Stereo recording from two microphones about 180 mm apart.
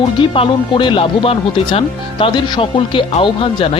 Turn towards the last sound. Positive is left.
turn(degrees=30)  # may be behind; listen again after turning